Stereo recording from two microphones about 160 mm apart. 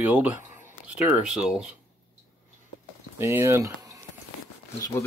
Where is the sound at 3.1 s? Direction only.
15° right (ahead or behind).